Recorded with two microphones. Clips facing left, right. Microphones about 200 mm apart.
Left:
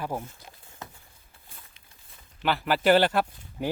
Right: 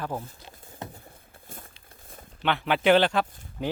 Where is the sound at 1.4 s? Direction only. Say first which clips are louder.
Right 9 dB; 45° right (ahead or behind).